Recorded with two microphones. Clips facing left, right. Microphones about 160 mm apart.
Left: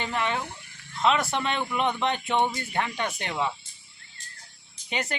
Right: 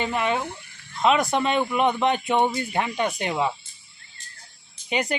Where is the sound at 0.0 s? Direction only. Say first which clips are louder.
Right 4 dB; 15° right (ahead or behind).